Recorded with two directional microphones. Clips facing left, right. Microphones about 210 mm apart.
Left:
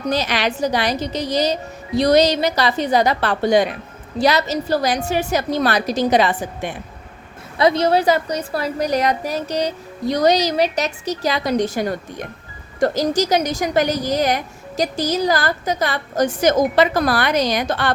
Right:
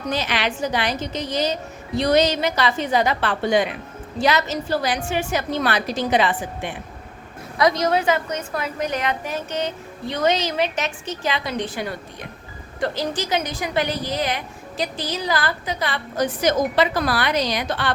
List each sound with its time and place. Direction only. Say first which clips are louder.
0.1 s a woman's voice: left 3 dB; 40° left (ahead or behind)
7.6 s a woman's voice: left 4 dB; 30° left (ahead or behind); by 17.9 s 45° left (ahead or behind)